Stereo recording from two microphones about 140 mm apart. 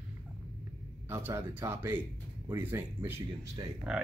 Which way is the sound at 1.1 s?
20° right (ahead or behind).